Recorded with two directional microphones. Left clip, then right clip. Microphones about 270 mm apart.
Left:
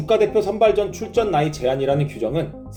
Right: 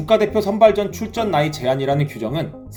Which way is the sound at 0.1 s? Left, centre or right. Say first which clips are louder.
Right 1 dB; right.